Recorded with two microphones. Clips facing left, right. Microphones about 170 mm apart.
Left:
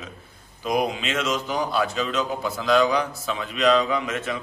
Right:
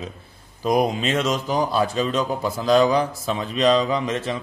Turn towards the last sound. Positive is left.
turn(degrees=-30)  # may be behind; listen again after turning